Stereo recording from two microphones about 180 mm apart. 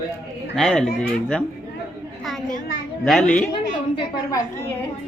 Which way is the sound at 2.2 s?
Centre (ahead or behind).